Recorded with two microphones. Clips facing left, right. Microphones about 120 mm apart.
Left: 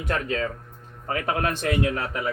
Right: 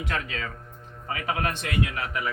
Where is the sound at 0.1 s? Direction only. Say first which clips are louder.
Left 8 dB; 35° left (ahead or behind).